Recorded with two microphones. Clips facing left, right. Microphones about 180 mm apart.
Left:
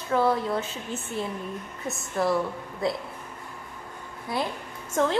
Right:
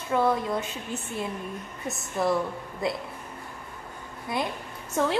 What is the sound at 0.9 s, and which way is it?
Speech, 25° left (ahead or behind).